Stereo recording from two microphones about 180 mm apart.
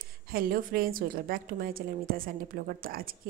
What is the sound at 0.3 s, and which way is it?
A woman's voice, 55° right (ahead or behind).